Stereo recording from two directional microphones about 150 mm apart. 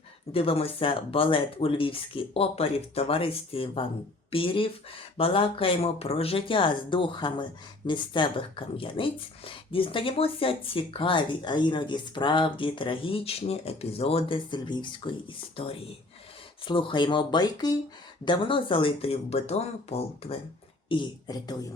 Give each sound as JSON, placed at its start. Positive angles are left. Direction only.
{"t": 0.3, "sound": "speech", "side_deg": 40}
{"t": 20.9, "sound": "speech", "side_deg": 30}